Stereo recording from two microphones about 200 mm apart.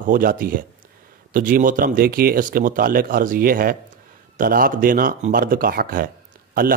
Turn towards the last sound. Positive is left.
turn(degrees=-45)  # may be behind; listen again after turning